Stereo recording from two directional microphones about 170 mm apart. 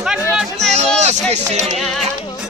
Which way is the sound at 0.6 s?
40° right (ahead or behind).